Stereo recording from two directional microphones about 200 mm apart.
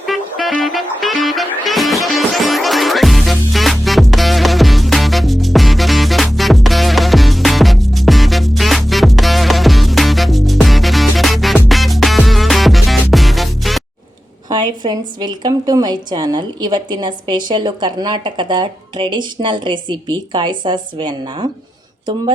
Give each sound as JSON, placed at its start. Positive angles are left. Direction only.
{"t": 0.0, "sound": "music", "side_deg": 0}
{"t": 14.5, "sound": "a woman's voice", "side_deg": -20}